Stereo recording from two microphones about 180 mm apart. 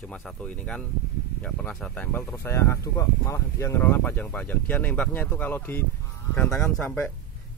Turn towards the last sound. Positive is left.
turn(degrees=5)  # may be behind; listen again after turning